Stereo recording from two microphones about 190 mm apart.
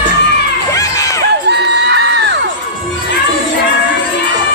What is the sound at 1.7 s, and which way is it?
Crowd, 65° right (ahead or behind).